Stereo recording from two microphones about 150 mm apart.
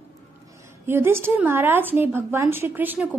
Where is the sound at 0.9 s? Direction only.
15° right (ahead or behind).